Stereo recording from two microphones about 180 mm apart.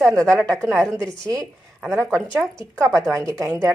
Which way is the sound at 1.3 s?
20° right (ahead or behind).